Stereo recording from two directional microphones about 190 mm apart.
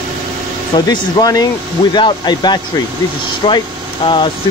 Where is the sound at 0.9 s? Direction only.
20° left (ahead or behind).